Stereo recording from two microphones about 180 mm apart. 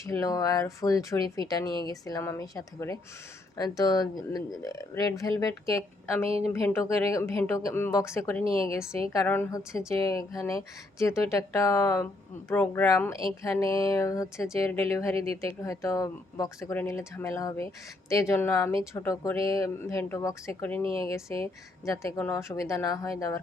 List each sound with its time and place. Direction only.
0.0 s speech: 15° left (ahead or behind)
8.4 s speech: 30° right (ahead or behind)
9.1 s speech: 10° left (ahead or behind)
15.1 s speech: 30° right (ahead or behind)
15.6 s speech: 20° left (ahead or behind)